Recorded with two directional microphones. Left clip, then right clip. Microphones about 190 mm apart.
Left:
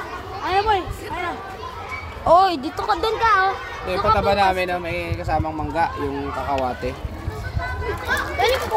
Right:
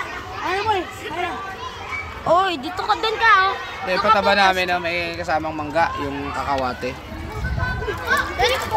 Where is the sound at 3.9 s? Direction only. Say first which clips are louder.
Right 2 dB; 5° right (ahead or behind).